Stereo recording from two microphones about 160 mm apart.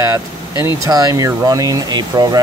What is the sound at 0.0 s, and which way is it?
Speech, 15° right (ahead or behind).